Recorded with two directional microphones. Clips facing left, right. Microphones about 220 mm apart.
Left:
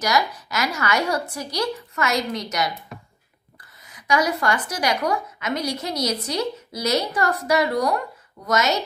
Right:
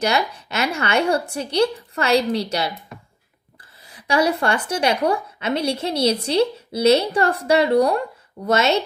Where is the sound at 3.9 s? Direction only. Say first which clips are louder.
Right 3 dB; 30° right (ahead or behind).